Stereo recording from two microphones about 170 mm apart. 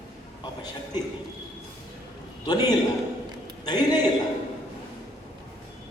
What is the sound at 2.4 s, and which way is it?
Speech, 25° left (ahead or behind).